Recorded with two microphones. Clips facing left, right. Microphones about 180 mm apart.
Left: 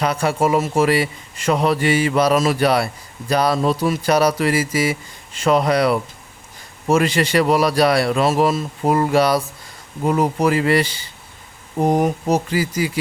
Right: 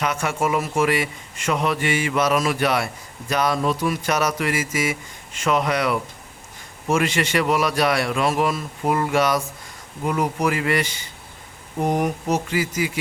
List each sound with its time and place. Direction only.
0.0 s a man's voice: 35° left (ahead or behind)